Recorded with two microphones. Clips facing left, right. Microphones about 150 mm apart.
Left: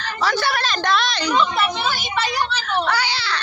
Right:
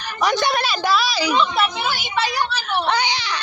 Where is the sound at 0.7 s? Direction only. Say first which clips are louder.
Right 1 dB; 5° right (ahead or behind).